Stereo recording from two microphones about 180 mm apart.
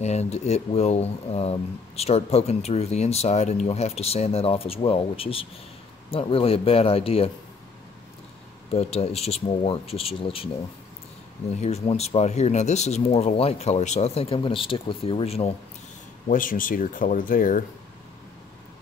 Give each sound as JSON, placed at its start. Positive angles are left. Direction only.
{"t": 0.0, "sound": "speech", "side_deg": 35}
{"t": 8.7, "sound": "speech", "side_deg": 35}
{"t": 11.5, "sound": "speech", "side_deg": 35}
{"t": 16.3, "sound": "speech", "side_deg": 50}